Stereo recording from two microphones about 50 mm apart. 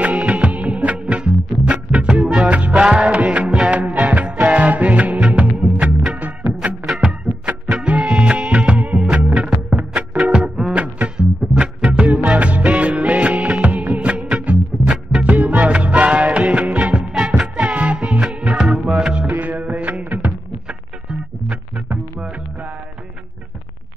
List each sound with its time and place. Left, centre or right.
0.0 s music: right
6.1 s music: right
11.1 s music: centre